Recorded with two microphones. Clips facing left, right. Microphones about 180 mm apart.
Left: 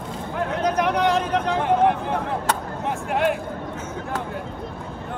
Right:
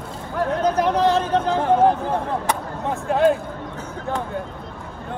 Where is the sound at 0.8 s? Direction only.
30° right (ahead or behind).